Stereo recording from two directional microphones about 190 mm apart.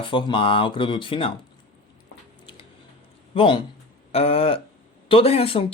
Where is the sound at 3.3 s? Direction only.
25° left (ahead or behind).